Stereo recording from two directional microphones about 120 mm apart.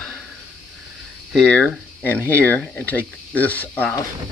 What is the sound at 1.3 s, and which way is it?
Speech, 5° left (ahead or behind).